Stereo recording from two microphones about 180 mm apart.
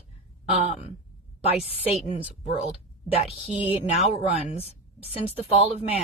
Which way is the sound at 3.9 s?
35° left (ahead or behind).